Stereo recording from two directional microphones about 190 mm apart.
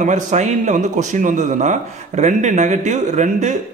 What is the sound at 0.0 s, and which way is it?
A man's voice, 40° right (ahead or behind).